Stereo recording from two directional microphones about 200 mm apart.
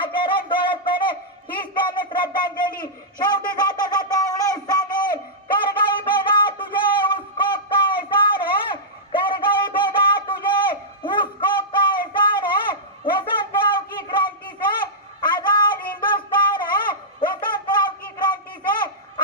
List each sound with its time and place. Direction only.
0.0 s music: 25° left (ahead or behind)
1.5 s a sound: 25° left (ahead or behind)
16.0 s music: 20° left (ahead or behind)